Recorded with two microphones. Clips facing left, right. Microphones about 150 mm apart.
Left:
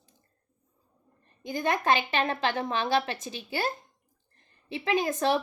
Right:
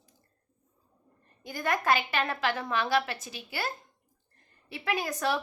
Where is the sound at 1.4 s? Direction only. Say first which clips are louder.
Left 2 dB; 20° left (ahead or behind).